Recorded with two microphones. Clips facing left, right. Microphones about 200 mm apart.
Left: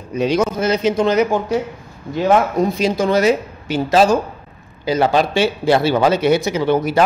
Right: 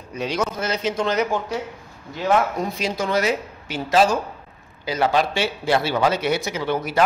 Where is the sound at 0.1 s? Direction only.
15° left (ahead or behind).